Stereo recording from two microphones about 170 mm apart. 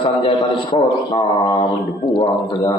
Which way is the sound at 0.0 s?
30° left (ahead or behind).